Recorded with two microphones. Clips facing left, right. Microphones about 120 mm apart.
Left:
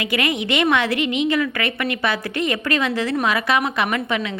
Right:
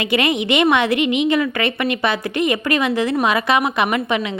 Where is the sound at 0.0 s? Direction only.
25° right (ahead or behind).